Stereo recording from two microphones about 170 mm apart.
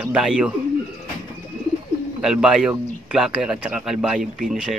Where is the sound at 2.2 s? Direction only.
5° right (ahead or behind).